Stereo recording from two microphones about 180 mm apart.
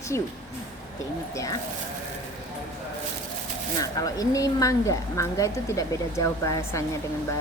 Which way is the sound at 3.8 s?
20° left (ahead or behind).